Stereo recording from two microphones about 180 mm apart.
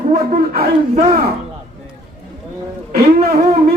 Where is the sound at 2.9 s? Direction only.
60° right (ahead or behind).